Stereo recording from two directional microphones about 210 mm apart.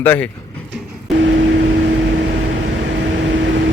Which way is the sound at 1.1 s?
60° right (ahead or behind).